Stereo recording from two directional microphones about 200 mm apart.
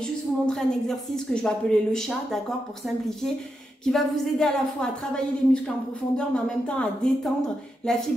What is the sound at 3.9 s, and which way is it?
Speech, 5° left (ahead or behind).